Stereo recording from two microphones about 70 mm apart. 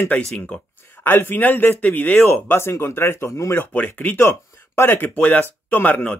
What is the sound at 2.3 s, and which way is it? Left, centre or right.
Speech, left.